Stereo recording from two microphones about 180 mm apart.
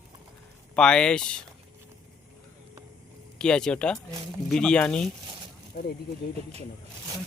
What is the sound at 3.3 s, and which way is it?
Speech, 5° left (ahead or behind).